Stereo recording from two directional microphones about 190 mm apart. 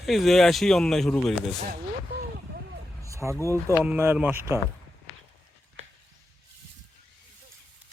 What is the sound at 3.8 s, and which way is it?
Speech, 10° right (ahead or behind).